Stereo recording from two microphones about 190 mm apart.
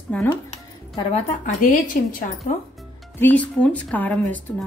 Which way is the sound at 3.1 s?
10° left (ahead or behind).